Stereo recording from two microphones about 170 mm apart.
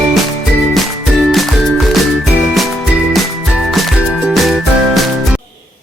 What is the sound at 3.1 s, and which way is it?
Music, centre (ahead or behind).